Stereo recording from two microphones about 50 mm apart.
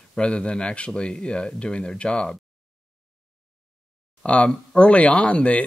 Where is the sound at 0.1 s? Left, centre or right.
Left.